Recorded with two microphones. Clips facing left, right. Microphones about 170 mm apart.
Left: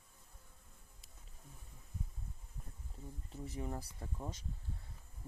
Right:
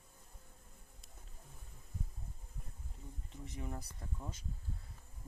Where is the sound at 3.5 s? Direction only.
30° left (ahead or behind).